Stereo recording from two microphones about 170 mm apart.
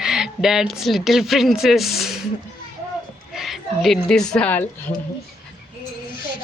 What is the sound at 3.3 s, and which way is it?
A woman's voice, centre (ahead or behind).